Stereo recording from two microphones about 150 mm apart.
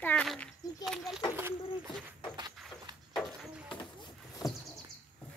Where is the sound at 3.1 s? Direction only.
Centre (ahead or behind).